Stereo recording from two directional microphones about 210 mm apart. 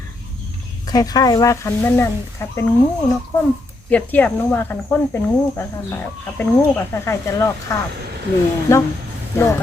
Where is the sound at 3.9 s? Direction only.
5° left (ahead or behind).